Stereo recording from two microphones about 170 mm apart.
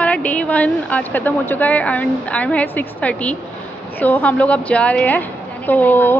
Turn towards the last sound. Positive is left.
turn(degrees=10)  # may be behind; listen again after turning